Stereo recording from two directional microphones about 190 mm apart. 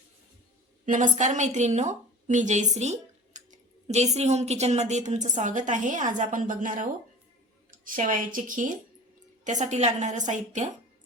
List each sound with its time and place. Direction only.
0.9 s a woman's voice: 40° right (ahead or behind)